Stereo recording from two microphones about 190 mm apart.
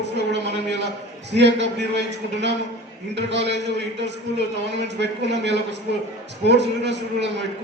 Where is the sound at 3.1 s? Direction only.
65° right (ahead or behind).